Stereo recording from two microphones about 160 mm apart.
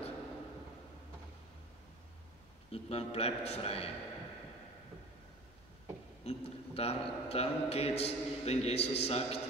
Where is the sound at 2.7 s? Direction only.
40° left (ahead or behind).